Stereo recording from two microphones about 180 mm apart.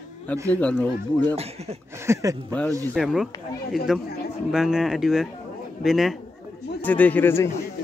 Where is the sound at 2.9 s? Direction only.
Centre (ahead or behind).